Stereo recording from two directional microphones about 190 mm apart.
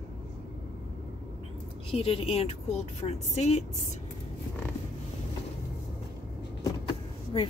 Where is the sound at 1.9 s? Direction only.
30° left (ahead or behind).